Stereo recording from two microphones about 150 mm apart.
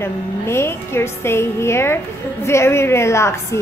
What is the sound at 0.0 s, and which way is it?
A woman's voice, 15° left (ahead or behind).